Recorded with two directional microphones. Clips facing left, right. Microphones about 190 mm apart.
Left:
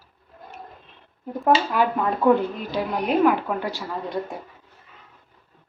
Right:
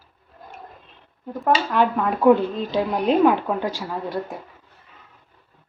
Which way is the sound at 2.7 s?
25° right (ahead or behind).